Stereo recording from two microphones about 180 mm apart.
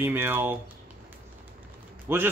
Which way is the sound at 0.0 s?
10° right (ahead or behind).